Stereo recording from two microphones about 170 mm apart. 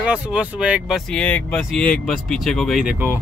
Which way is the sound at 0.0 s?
5° right (ahead or behind).